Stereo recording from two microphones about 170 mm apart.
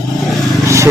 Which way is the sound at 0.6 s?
15° right (ahead or behind).